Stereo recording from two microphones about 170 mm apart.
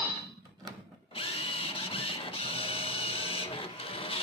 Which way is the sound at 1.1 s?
35° left (ahead or behind).